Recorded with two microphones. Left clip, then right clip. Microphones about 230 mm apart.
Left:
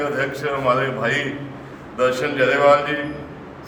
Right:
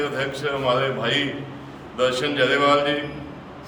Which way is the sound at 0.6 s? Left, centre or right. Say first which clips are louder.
Left 2 dB; centre.